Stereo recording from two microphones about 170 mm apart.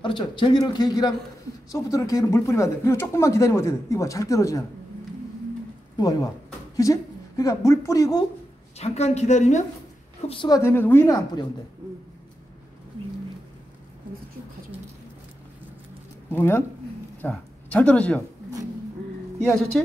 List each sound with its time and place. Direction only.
0.0 s speech: 30° left (ahead or behind)
5.9 s speech: 20° left (ahead or behind)
8.7 s a woman's voice: 40° left (ahead or behind)
10.2 s speech: 30° left (ahead or behind)
10.6 s speech: 15° left (ahead or behind)
16.3 s speech: 10° left (ahead or behind)
19.4 s speech: 5° left (ahead or behind)